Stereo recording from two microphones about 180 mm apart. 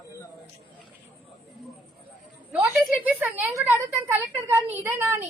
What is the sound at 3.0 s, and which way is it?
A woman's voice, 10° right (ahead or behind).